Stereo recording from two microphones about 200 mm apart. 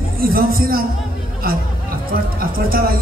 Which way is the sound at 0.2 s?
50° right (ahead or behind).